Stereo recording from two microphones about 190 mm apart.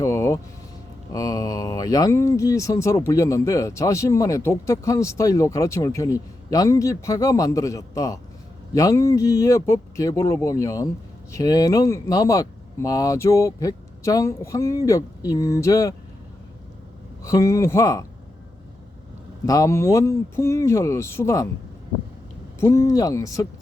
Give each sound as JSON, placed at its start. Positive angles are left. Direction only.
{"t": 0.0, "sound": "vehicle", "side_deg": 15}
{"t": 1.1, "sound": "speech", "side_deg": 20}
{"t": 17.2, "sound": "speech", "side_deg": 15}
{"t": 19.5, "sound": "speech", "side_deg": 15}
{"t": 22.6, "sound": "speech", "side_deg": 15}